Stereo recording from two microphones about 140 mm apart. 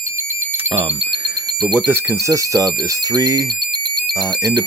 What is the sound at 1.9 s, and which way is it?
Speech, 20° right (ahead or behind).